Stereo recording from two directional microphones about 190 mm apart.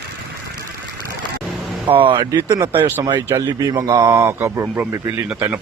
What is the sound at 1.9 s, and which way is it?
Speech, 25° right (ahead or behind).